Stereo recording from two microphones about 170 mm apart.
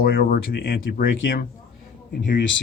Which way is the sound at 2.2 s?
85° left.